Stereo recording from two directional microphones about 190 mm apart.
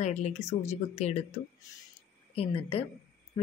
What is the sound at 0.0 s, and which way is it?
Speech, 35° left (ahead or behind).